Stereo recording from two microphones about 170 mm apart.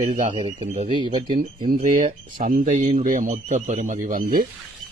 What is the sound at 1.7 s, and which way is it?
Speech, 55° right (ahead or behind).